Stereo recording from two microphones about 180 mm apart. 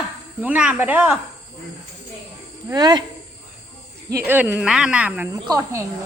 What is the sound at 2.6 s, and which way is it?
Speech, 20° right (ahead or behind).